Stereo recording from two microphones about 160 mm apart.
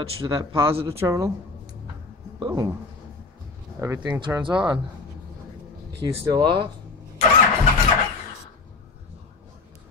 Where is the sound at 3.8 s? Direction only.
20° right (ahead or behind).